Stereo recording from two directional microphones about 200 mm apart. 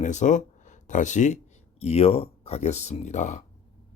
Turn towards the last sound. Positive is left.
turn(degrees=35)  # may be behind; listen again after turning